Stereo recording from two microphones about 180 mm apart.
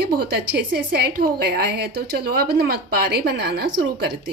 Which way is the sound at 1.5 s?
60° right (ahead or behind).